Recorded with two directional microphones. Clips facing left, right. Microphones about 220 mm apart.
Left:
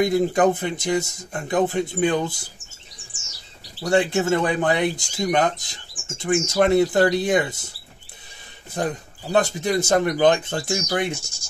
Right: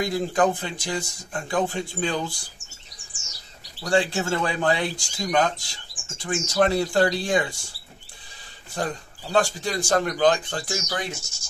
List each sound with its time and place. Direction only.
0.0 s speech: 20° left (ahead or behind)
3.8 s speech: 20° left (ahead or behind)
8.7 s speech: 20° left (ahead or behind)